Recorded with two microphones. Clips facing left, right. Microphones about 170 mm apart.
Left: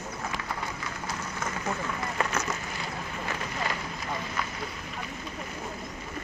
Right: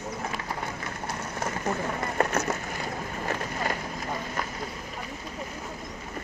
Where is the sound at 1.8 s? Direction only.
50° right (ahead or behind).